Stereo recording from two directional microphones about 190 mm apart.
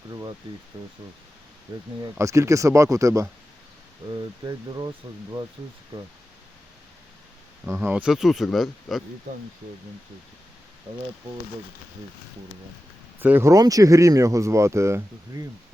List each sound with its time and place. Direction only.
2.0 s speech: 15° right (ahead or behind)
4.4 s speech: 25° right (ahead or behind)
7.6 s speech: 10° right (ahead or behind)
13.1 s speech: 10° right (ahead or behind)